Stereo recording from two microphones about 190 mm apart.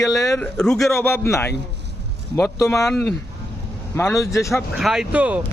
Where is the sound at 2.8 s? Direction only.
5° left (ahead or behind).